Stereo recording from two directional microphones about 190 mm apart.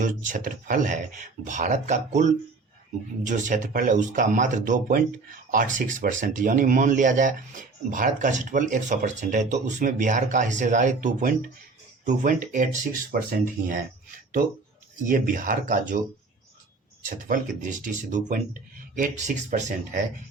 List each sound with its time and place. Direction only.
0.0 s speech: 45° right (ahead or behind)
15.0 s speech: 45° right (ahead or behind)
17.0 s speech: 45° right (ahead or behind)